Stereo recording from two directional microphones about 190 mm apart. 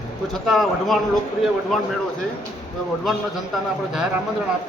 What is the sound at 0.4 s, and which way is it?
Speech, centre (ahead or behind).